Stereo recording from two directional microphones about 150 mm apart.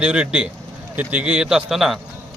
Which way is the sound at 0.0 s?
5° right (ahead or behind).